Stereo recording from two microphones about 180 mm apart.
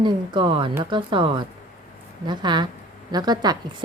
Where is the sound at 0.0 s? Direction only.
25° right (ahead or behind).